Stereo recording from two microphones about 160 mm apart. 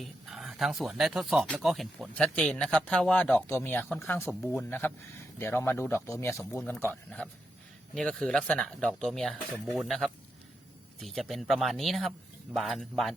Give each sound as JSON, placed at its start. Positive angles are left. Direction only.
{"t": 0.0, "sound": "speech", "side_deg": 0}